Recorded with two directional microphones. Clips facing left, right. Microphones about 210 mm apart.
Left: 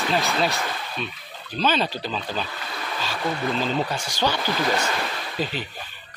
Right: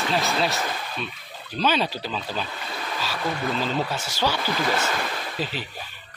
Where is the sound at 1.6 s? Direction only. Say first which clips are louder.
Even; 10° right (ahead or behind).